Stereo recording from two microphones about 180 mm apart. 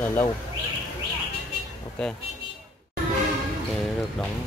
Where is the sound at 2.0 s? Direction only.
5° left (ahead or behind).